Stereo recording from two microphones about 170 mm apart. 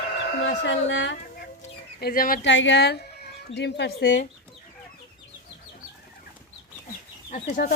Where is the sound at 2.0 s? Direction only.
60° left (ahead or behind).